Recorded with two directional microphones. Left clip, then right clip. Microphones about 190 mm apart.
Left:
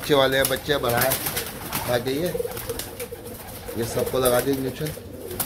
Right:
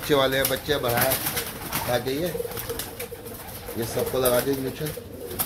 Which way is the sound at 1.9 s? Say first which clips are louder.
Left 2 dB; centre (ahead or behind).